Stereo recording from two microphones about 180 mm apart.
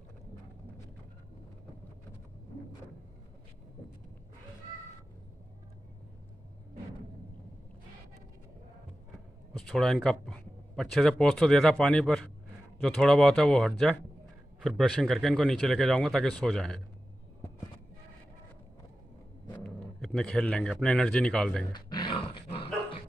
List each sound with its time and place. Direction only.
9.5 s speech: 5° left (ahead or behind)
19.6 s speech: 5° left (ahead or behind)
21.7 s dog: 25° left (ahead or behind)